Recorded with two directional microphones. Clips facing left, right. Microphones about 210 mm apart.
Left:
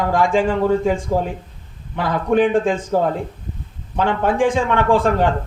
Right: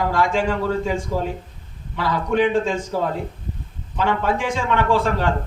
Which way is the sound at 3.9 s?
50° left (ahead or behind).